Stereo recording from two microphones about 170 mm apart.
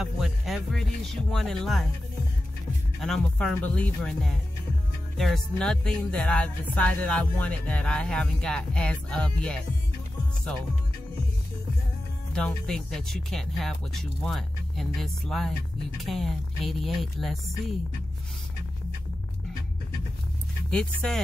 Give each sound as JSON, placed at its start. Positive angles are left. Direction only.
{"t": 0.0, "sound": "speech", "side_deg": 0}
{"t": 3.0, "sound": "speech", "side_deg": 5}
{"t": 12.4, "sound": "speech", "side_deg": 5}
{"t": 20.7, "sound": "speech", "side_deg": 5}